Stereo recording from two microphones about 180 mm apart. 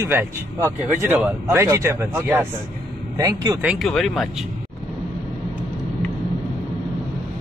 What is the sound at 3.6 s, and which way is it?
Speech, centre (ahead or behind).